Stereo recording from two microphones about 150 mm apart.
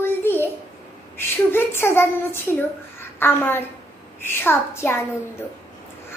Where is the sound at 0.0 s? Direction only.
15° left (ahead or behind).